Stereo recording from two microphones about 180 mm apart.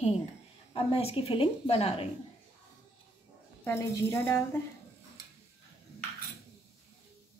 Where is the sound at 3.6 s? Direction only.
15° left (ahead or behind).